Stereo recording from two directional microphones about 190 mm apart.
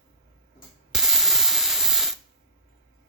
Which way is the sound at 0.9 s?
Centre (ahead or behind).